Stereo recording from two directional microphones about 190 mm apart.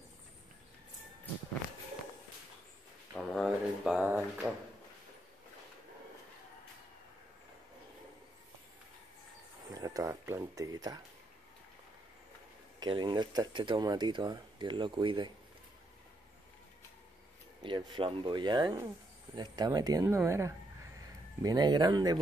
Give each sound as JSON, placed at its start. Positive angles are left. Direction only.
{"t": 3.2, "sound": "a sound", "side_deg": 0}
{"t": 9.8, "sound": "speech", "side_deg": -15}
{"t": 12.8, "sound": "speech", "side_deg": -25}
{"t": 17.6, "sound": "speech", "side_deg": -25}